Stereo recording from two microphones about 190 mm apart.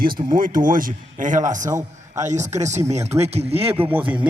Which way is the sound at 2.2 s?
40° right (ahead or behind).